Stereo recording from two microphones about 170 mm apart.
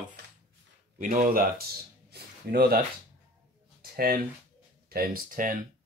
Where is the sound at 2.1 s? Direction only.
65° right (ahead or behind).